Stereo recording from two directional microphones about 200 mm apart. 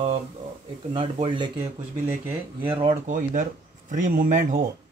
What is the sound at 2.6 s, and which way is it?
Speech, 25° right (ahead or behind).